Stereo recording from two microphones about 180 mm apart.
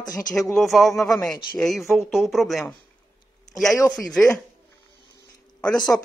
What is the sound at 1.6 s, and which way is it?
Speech, centre (ahead or behind).